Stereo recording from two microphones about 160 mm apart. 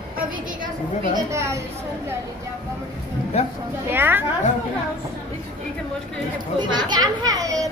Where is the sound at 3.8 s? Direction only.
10° right (ahead or behind).